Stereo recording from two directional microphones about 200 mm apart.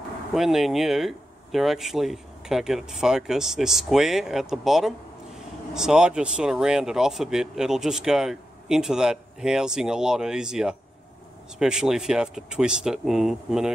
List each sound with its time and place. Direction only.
0.3 s speech: centre (ahead or behind)